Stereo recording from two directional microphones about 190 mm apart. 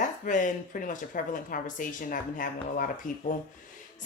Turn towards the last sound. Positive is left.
turn(degrees=45)  # may be behind; listen again after turning